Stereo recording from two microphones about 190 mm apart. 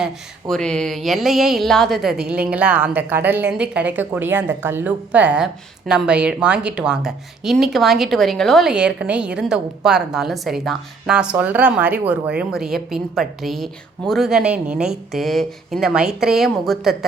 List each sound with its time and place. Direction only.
0.0 s speech: centre (ahead or behind)